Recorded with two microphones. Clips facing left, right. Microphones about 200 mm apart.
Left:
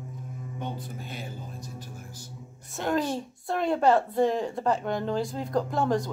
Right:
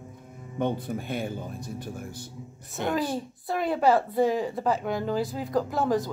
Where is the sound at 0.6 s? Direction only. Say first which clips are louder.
Right 9 dB; 60° right (ahead or behind).